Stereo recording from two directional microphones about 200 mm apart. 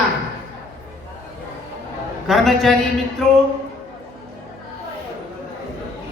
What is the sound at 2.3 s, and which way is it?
Speech, centre (ahead or behind).